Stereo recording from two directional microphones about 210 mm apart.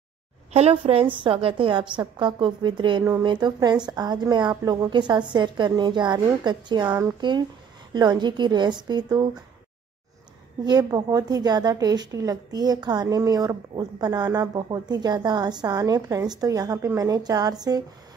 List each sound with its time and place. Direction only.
0.5 s a woman's voice: 30° right (ahead or behind)
10.6 s a woman's voice: 20° right (ahead or behind)